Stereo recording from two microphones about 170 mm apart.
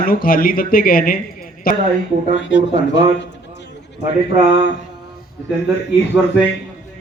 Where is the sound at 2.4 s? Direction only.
90° left.